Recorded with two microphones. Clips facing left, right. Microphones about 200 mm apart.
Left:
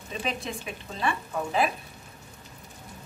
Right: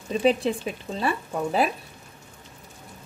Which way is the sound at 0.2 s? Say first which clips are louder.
Right 11 dB; 35° right (ahead or behind).